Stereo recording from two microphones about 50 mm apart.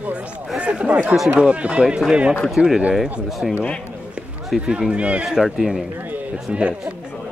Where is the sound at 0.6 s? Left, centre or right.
Right.